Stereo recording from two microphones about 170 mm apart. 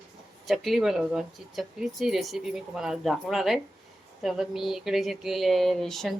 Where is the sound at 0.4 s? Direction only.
Centre (ahead or behind).